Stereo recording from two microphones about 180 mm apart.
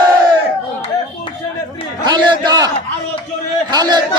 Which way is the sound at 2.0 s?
25° right (ahead or behind).